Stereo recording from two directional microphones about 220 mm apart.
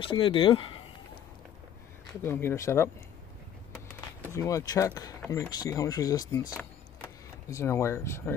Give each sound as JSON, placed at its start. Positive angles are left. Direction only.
{"t": 0.0, "sound": "speech", "side_deg": 25}
{"t": 2.2, "sound": "speech", "side_deg": 10}
{"t": 4.3, "sound": "speech", "side_deg": 15}